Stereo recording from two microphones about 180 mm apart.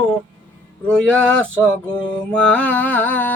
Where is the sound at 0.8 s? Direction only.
5° left (ahead or behind).